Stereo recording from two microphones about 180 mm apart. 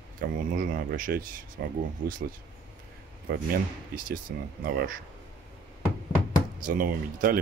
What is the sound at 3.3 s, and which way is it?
Speech, 55° right (ahead or behind).